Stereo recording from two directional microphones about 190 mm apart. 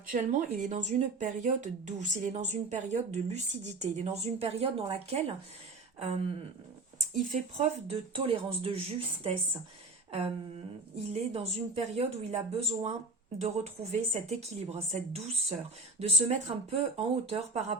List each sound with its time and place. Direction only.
0.1 s speech: 40° right (ahead or behind)
10.1 s a sound: 30° right (ahead or behind)
11.1 s speech: 35° right (ahead or behind)
13.9 s speech: 35° right (ahead or behind)